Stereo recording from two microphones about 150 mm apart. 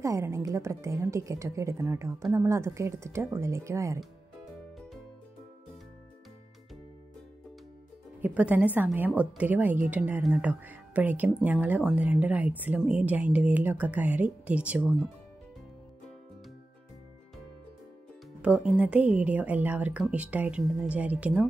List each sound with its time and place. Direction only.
0.0 s a woman's voice: 20° right (ahead or behind)
8.2 s speech: 10° right (ahead or behind)
18.4 s speech: 10° right (ahead or behind)